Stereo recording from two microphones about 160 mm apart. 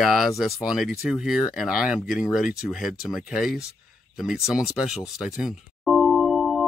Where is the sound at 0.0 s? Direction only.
Centre (ahead or behind).